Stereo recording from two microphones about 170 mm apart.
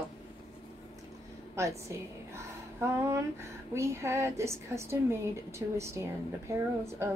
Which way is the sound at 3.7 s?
15° right (ahead or behind).